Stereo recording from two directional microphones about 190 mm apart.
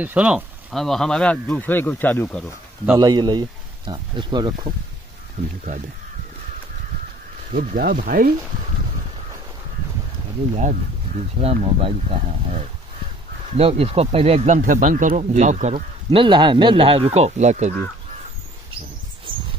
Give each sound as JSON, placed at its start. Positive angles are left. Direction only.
{"t": 0.0, "sound": "speech", "side_deg": -5}
{"t": 3.0, "sound": "speech", "side_deg": -20}
{"t": 7.5, "sound": "speech", "side_deg": -50}
{"t": 10.5, "sound": "speech", "side_deg": -40}